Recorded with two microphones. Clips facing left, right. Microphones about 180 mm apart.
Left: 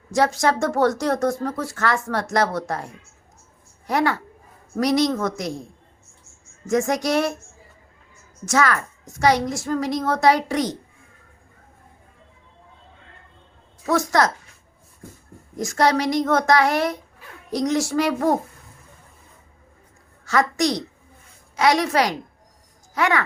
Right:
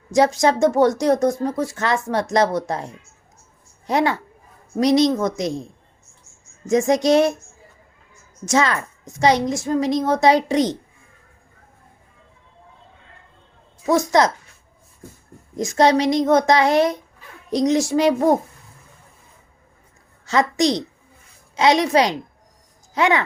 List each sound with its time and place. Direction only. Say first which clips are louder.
0.1 s a woman's voice: right 3 dB; 15° right (ahead or behind)
6.7 s a woman's voice: right 5 dB; 20° right (ahead or behind)
8.4 s a woman's voice: right 1 dB; 20° right (ahead or behind)
13.8 s a woman's voice: right 3 dB; 20° right (ahead or behind)
15.5 s a woman's voice: right 4 dB; 20° right (ahead or behind)
20.2 s a woman's voice: right 2 dB; 20° right (ahead or behind)